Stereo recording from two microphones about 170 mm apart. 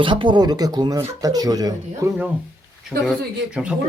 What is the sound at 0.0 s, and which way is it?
Speech, 30° right (ahead or behind).